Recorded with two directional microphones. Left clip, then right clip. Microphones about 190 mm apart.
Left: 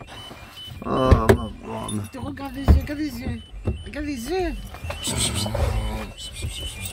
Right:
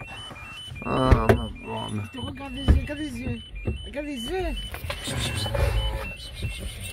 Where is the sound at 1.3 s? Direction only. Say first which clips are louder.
Left 3 dB; 20° left (ahead or behind).